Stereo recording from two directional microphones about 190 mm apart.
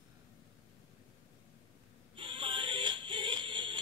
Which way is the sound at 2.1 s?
25° right (ahead or behind).